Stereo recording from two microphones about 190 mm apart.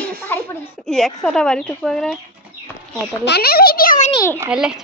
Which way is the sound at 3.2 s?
55° left (ahead or behind).